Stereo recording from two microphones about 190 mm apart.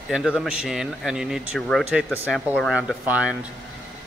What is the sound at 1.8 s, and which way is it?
Speech, 10° right (ahead or behind).